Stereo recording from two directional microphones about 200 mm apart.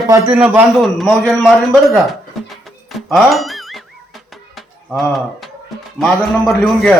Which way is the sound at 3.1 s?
Centre (ahead or behind).